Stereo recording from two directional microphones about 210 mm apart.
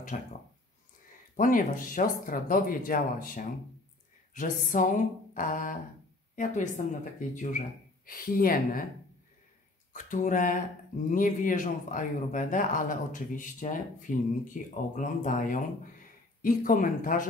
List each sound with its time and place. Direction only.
0.1 s a man's voice: 35° left (ahead or behind)
1.3 s a man's voice: 40° left (ahead or behind)
8.1 s speech: 45° left (ahead or behind)
9.9 s a man's voice: 40° left (ahead or behind)